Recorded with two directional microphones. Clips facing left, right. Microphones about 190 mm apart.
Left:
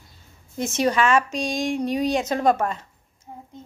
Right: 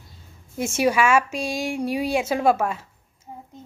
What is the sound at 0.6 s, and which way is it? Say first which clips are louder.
Speech: right 1 dB; 10° right (ahead or behind).